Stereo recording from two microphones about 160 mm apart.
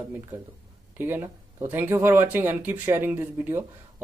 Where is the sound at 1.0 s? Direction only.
15° right (ahead or behind).